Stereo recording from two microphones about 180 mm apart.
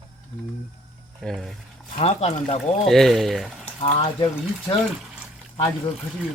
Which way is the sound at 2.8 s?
Centre (ahead or behind).